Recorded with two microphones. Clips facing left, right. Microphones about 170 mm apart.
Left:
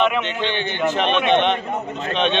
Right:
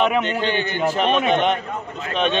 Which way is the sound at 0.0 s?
40° right (ahead or behind).